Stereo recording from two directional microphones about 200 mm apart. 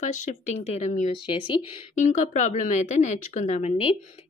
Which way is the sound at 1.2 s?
25° left (ahead or behind).